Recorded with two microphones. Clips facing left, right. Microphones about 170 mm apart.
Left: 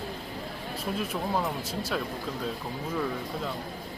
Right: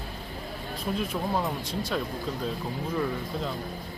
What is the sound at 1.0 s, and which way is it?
Speech, centre (ahead or behind).